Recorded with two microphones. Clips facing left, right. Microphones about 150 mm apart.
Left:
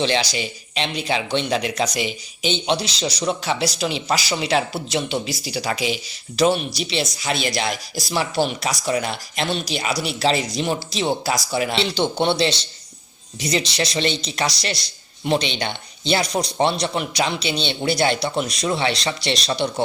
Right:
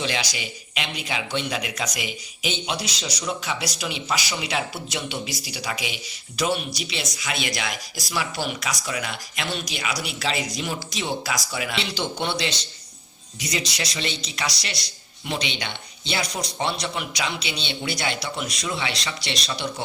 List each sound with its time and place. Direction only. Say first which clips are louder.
0.0 s speech: left 7 dB; 30° left (ahead or behind)